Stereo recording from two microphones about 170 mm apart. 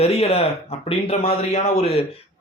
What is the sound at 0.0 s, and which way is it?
A man's voice, 35° left (ahead or behind).